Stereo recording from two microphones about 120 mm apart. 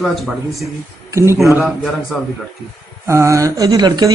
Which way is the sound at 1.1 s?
20° right (ahead or behind).